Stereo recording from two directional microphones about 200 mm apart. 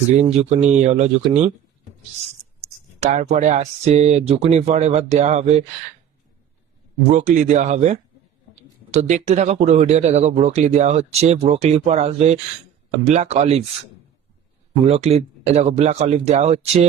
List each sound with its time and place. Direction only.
0.1 s speech: 35° right (ahead or behind)
3.0 s speech: 35° right (ahead or behind)
7.1 s speech: 35° right (ahead or behind)
9.0 s speech: 35° right (ahead or behind)
14.8 s speech: 30° right (ahead or behind)